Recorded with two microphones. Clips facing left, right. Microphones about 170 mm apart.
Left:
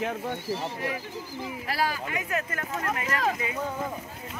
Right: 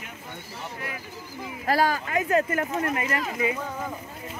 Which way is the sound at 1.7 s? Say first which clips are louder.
Right 7 dB; 45° right (ahead or behind).